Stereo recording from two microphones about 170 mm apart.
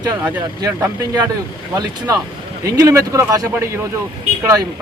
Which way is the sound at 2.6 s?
20° right (ahead or behind).